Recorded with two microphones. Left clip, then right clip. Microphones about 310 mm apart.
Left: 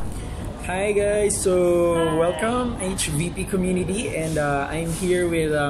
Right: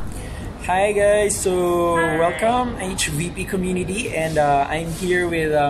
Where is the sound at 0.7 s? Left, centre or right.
Right.